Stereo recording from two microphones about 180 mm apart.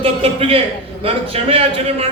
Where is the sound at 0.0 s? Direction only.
30° right (ahead or behind).